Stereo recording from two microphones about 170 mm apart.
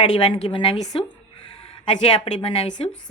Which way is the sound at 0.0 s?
30° left (ahead or behind).